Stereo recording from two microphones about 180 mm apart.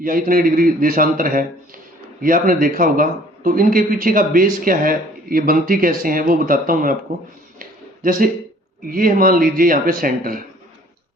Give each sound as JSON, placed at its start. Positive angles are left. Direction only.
{"t": 0.0, "sound": "a man's voice", "side_deg": -50}
{"t": 7.6, "sound": "a sound", "side_deg": -50}
{"t": 8.9, "sound": "a man's voice", "side_deg": -50}